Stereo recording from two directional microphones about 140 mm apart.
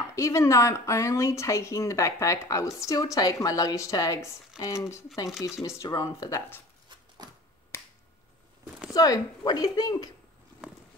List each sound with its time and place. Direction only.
0.1 s speech: 20° left (ahead or behind)
7.2 s finger snapping: 30° right (ahead or behind)
7.7 s finger snapping: 20° left (ahead or behind)
8.6 s a sound: 5° right (ahead or behind)
8.9 s speech: 25° left (ahead or behind)